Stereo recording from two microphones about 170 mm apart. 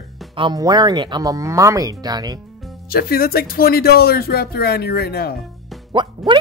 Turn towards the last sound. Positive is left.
turn(degrees=-25)  # may be behind; listen again after turning